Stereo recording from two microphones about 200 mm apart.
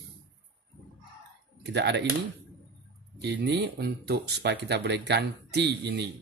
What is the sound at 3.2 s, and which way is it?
Speech, 55° right (ahead or behind).